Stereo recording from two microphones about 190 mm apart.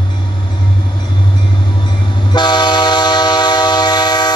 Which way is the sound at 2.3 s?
20° left (ahead or behind).